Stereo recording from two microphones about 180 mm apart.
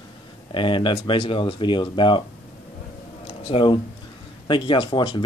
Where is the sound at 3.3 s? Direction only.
30° left (ahead or behind).